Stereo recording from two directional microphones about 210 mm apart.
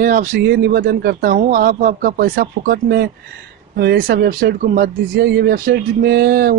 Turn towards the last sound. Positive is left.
turn(degrees=-45)  # may be behind; listen again after turning